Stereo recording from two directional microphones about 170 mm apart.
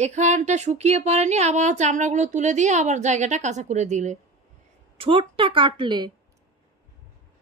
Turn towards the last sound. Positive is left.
turn(degrees=-25)  # may be behind; listen again after turning